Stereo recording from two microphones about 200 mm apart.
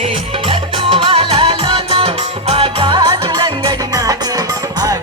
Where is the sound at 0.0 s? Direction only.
30° right (ahead or behind).